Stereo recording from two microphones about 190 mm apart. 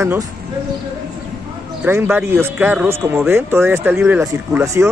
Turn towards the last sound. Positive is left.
turn(degrees=-10)  # may be behind; listen again after turning